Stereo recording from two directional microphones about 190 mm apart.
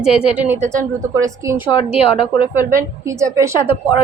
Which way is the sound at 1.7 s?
30° left (ahead or behind).